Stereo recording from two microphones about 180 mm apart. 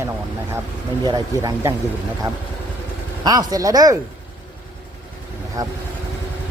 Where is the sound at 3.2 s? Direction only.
20° right (ahead or behind).